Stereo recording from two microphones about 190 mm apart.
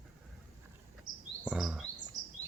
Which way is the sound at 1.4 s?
5° right (ahead or behind).